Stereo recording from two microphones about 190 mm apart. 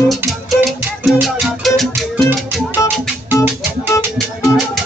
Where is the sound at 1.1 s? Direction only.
Centre (ahead or behind).